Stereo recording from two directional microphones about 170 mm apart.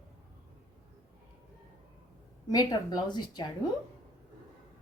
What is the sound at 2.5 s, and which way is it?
Speech, 20° left (ahead or behind).